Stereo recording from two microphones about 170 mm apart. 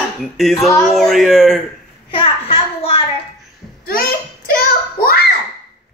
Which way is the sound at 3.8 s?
60° left (ahead or behind).